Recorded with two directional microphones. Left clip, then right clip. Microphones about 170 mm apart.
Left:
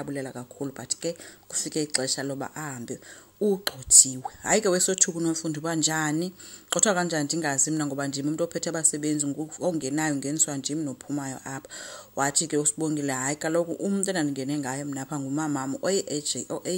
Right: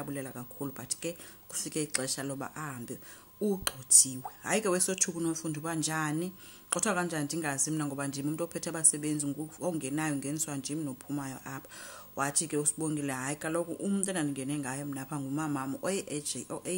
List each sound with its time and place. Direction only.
0.0 s a woman's voice: 20° left (ahead or behind)